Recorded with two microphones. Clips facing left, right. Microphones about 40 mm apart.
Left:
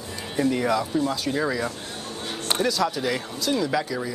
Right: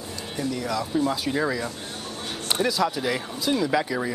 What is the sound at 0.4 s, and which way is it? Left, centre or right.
Speech, left.